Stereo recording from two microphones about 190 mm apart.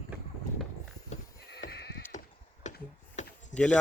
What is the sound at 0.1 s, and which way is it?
Horse, 10° right (ahead or behind).